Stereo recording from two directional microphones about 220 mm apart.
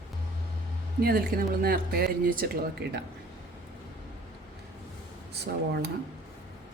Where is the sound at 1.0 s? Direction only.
45° right (ahead or behind).